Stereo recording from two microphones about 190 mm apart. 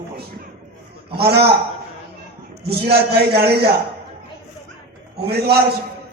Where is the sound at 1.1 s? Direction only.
55° right (ahead or behind).